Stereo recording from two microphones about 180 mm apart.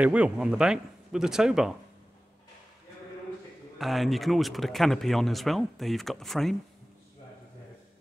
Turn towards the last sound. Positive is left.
turn(degrees=0)  # may be behind; listen again after turning